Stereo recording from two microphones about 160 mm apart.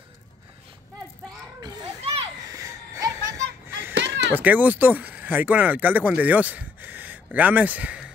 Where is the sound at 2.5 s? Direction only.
20° right (ahead or behind).